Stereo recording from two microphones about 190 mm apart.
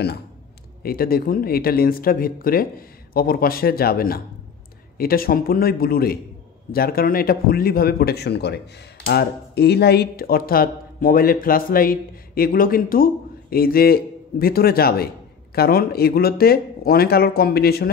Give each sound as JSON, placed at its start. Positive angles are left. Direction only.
{"t": 0.8, "sound": "speech", "side_deg": 50}